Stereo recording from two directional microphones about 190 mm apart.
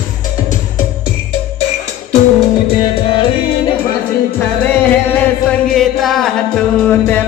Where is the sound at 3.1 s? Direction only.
25° left (ahead or behind).